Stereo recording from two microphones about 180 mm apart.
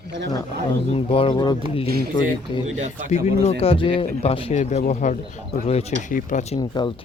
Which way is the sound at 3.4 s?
35° left (ahead or behind).